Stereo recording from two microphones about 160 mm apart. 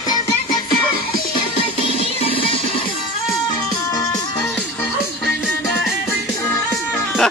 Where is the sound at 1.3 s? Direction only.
35° left (ahead or behind).